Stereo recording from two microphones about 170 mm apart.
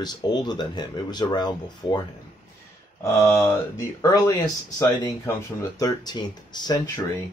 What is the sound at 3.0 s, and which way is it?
Speech, 15° left (ahead or behind).